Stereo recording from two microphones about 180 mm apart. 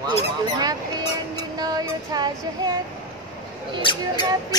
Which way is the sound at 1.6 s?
20° right (ahead or behind).